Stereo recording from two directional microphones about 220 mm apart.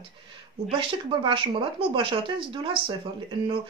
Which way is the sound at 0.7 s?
25° right (ahead or behind).